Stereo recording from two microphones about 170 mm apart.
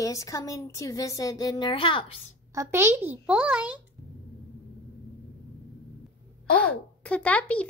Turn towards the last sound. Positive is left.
turn(degrees=10)  # may be behind; listen again after turning